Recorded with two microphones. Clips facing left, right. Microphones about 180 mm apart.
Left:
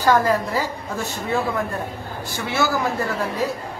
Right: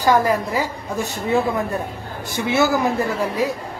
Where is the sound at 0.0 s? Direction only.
15° right (ahead or behind).